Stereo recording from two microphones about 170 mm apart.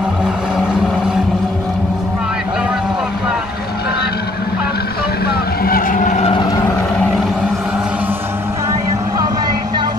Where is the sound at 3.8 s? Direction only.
70° left (ahead or behind); by 6.3 s 45° left (ahead or behind).